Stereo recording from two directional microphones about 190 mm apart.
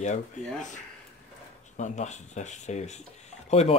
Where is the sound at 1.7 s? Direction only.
40° left (ahead or behind).